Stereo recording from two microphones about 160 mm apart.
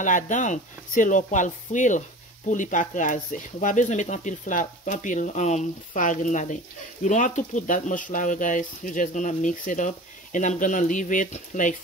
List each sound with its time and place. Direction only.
0.0 s speech: 50° left (ahead or behind)